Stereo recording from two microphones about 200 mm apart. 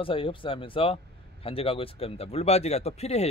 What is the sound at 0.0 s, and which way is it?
Speech, 25° left (ahead or behind).